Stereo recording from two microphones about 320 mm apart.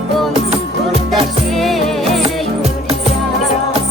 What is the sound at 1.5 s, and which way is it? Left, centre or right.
Music, centre.